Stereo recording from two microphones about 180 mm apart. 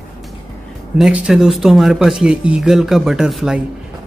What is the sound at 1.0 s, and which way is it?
Speech, 5° right (ahead or behind).